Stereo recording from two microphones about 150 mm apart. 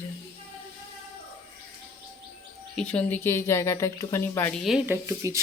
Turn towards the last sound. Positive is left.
turn(degrees=-20)  # may be behind; listen again after turning